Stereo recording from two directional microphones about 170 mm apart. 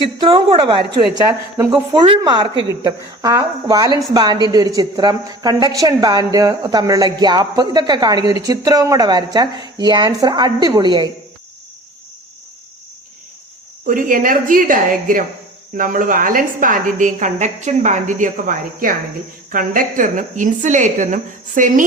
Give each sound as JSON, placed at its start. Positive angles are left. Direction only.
{"t": 0.2, "sound": "a woman's voice", "side_deg": -30}
{"t": 1.2, "sound": "a woman's voice", "side_deg": -15}
{"t": 13.8, "sound": "a woman's voice", "side_deg": -50}